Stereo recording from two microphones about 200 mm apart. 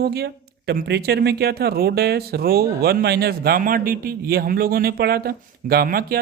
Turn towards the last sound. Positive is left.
turn(degrees=-50)  # may be behind; listen again after turning